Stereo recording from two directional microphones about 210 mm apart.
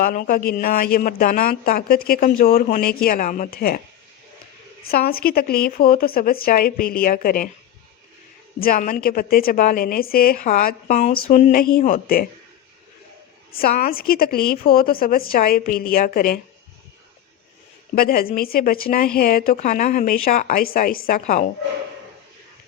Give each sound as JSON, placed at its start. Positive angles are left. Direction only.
{"t": 0.0, "sound": "speech", "side_deg": 40}
{"t": 4.8, "sound": "speech", "side_deg": 45}
{"t": 8.6, "sound": "a woman's voice", "side_deg": 40}
{"t": 13.5, "sound": "speech", "side_deg": 45}
{"t": 17.9, "sound": "speech", "side_deg": 45}